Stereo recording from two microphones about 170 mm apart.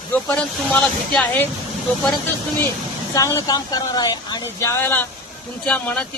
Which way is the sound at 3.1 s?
20° left (ahead or behind).